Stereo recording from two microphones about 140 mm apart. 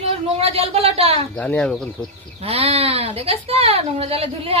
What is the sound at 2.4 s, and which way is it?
Speech, 45° right (ahead or behind).